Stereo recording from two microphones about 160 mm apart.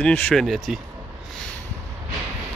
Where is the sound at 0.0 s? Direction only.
10° left (ahead or behind).